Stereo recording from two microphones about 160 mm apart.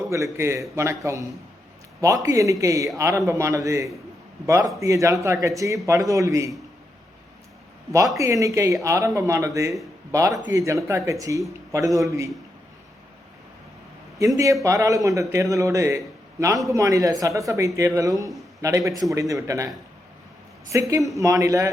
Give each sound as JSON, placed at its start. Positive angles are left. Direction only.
{"t": 0.1, "sound": "a man's voice", "side_deg": -15}
{"t": 8.2, "sound": "speech", "side_deg": -20}
{"t": 14.3, "sound": "speech", "side_deg": -20}
{"t": 20.7, "sound": "speech", "side_deg": -20}